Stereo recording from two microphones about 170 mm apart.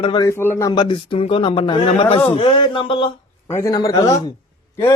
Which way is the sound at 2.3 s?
30° left (ahead or behind).